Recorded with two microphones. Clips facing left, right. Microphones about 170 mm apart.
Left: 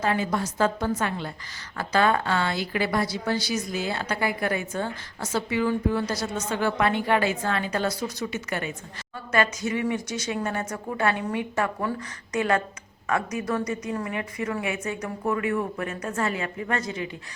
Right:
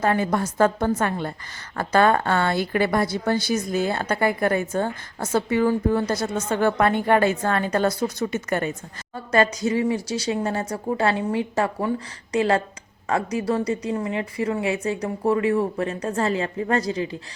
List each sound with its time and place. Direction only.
0.0 s a woman's voice: 50° right (ahead or behind)
9.1 s a woman's voice: 35° right (ahead or behind)